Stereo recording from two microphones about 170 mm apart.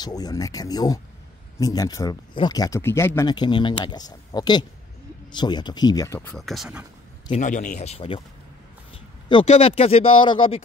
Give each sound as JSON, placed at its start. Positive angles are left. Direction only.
{"t": 0.0, "sound": "speech", "side_deg": 25}
{"t": 3.2, "sound": "speech", "side_deg": 25}
{"t": 6.3, "sound": "speech", "side_deg": 0}
{"t": 7.2, "sound": "speech", "side_deg": 45}
{"t": 9.3, "sound": "speech", "side_deg": 35}